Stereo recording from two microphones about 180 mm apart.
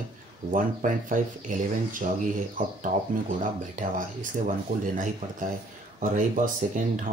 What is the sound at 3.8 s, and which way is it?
Speech, 45° right (ahead or behind).